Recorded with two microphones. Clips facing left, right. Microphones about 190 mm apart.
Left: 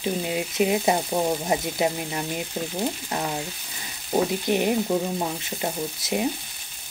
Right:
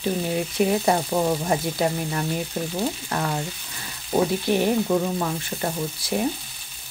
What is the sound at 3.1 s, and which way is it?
Stir, 20° left (ahead or behind).